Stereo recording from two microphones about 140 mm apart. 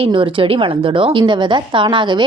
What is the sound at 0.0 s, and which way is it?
A woman's voice, 35° right (ahead or behind).